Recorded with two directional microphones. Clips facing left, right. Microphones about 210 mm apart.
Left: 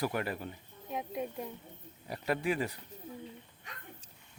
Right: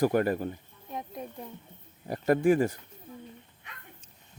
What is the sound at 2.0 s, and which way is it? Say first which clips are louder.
Speech: right 9 dB; 45° right (ahead or behind).